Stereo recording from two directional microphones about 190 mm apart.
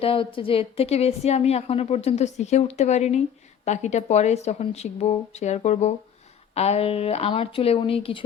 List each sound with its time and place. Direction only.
0.0 s a woman's voice: 30° left (ahead or behind)